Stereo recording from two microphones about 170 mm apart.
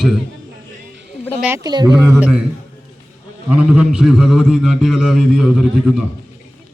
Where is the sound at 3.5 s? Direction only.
5° right (ahead or behind).